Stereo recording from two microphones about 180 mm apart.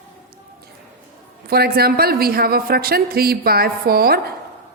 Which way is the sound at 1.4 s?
60° right (ahead or behind).